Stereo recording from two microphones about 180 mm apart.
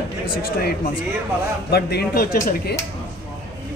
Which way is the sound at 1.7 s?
60° left (ahead or behind).